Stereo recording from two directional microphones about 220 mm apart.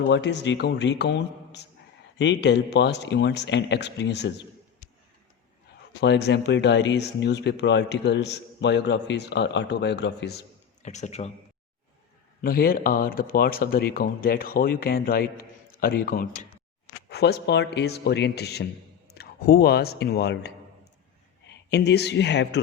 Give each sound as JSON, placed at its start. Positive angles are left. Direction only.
{"t": 0.1, "sound": "speech", "side_deg": 50}
{"t": 6.0, "sound": "speech", "side_deg": 50}
{"t": 10.8, "sound": "speech", "side_deg": 30}
{"t": 12.4, "sound": "speech", "side_deg": 40}
{"t": 21.5, "sound": "speech", "side_deg": 50}